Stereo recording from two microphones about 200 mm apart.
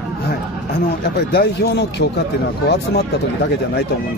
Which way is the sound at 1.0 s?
55° left (ahead or behind).